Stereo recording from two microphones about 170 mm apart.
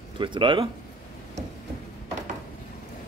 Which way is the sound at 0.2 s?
30° right (ahead or behind).